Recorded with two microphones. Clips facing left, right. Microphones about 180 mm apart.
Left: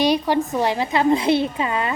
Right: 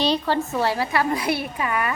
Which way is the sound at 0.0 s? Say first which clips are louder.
Left 3 dB; 15° left (ahead or behind).